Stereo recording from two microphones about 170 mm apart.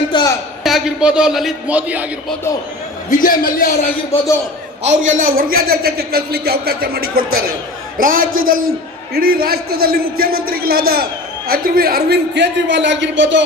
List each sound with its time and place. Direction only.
0.1 s a man's voice: 25° left (ahead or behind)
0.6 s a man's voice: 5° right (ahead or behind)
3.1 s a man's voice: 55° left (ahead or behind)
4.8 s a man's voice: 45° right (ahead or behind); by 13.4 s 90° right